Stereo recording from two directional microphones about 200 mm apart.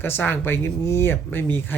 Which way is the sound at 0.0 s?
10° left (ahead or behind).